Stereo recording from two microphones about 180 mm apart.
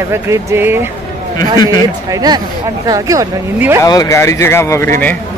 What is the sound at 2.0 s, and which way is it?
Speech, 20° right (ahead or behind).